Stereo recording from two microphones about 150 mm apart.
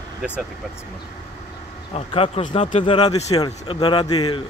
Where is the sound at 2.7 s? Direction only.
35° left (ahead or behind).